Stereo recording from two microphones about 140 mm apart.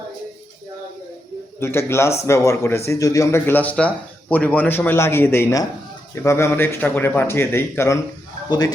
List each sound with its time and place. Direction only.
1.5 s speech: 15° left (ahead or behind)
8.4 s speech: 30° left (ahead or behind)